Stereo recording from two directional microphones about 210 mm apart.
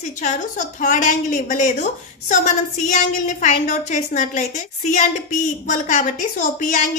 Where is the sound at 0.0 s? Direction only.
35° left (ahead or behind).